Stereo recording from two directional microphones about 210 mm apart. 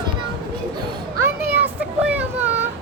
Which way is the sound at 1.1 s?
10° right (ahead or behind).